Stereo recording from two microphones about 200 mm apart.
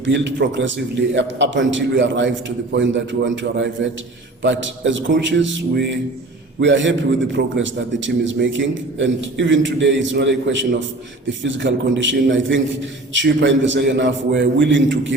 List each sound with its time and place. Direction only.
0.0 s a man's voice: 65° right (ahead or behind)